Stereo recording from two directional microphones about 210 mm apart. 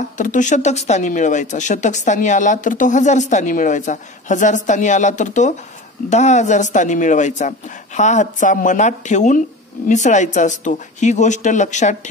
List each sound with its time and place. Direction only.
0.2 s speech: 35° left (ahead or behind)